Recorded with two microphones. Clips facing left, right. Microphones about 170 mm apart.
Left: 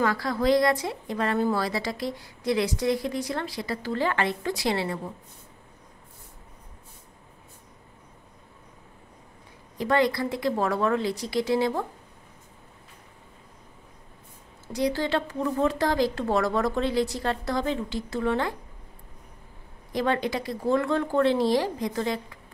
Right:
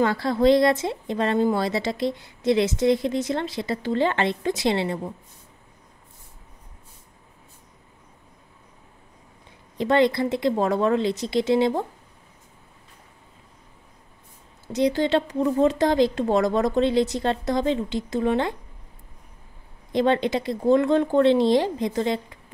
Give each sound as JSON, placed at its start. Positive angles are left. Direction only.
{"t": 0.0, "sound": "a woman's voice", "side_deg": -25}
{"t": 9.8, "sound": "a woman's voice", "side_deg": -25}
{"t": 14.7, "sound": "a woman's voice", "side_deg": -20}
{"t": 19.9, "sound": "a woman's voice", "side_deg": -25}